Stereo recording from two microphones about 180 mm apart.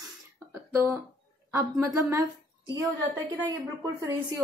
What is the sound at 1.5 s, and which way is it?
Speech, 15° right (ahead or behind).